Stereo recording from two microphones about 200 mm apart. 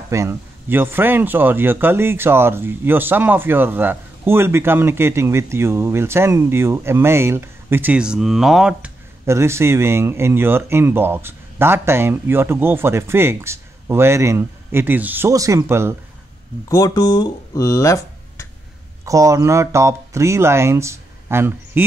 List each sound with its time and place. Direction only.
0.1 s speech: 15° right (ahead or behind)
9.2 s speech: 15° right (ahead or behind)
16.6 s speech: 15° left (ahead or behind)
19.0 s speech: 15° right (ahead or behind)